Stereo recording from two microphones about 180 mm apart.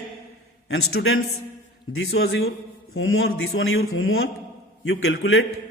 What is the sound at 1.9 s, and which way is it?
Speech, 75° left (ahead or behind).